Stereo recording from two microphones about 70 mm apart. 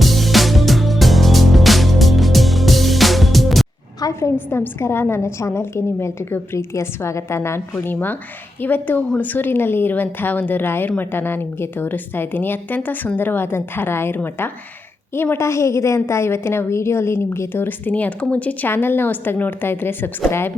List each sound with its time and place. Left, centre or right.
0.0 s music: centre
4.2 s a woman's voice: left
8.6 s a woman's voice: left
18.7 s a woman's voice: left